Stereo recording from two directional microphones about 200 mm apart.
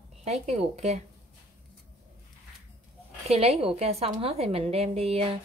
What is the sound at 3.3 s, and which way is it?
A woman's voice, 30° right (ahead or behind).